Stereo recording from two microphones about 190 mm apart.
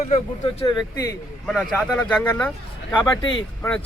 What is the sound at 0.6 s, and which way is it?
Speech, 20° left (ahead or behind).